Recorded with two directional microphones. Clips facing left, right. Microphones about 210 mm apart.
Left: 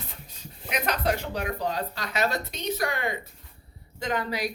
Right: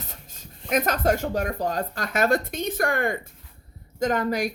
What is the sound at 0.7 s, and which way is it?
Speech, 45° right (ahead or behind).